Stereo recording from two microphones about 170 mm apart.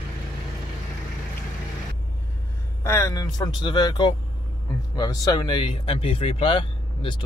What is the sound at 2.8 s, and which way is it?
Speech, 15° left (ahead or behind).